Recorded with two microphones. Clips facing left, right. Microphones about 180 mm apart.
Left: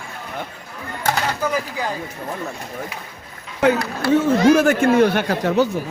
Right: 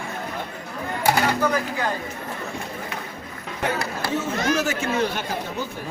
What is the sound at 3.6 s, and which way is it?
Speech, 65° left (ahead or behind).